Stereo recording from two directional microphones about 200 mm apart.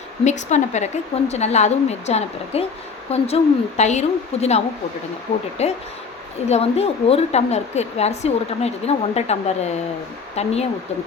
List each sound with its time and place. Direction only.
0.3 s a woman's voice: 35° left (ahead or behind)